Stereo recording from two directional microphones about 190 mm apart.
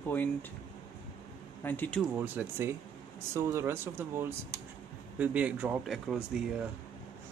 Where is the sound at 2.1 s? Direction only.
10° right (ahead or behind).